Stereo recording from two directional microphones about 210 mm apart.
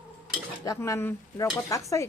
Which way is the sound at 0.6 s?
15° left (ahead or behind).